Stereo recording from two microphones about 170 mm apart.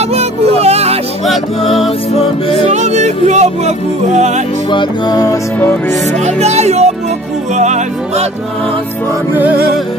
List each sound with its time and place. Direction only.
0.0 s music: 40° right (ahead or behind)
2.6 s speech: 40° right (ahead or behind)
4.6 s music: 25° left (ahead or behind)
6.1 s music: 40° right (ahead or behind)
7.5 s speech: 45° right (ahead or behind)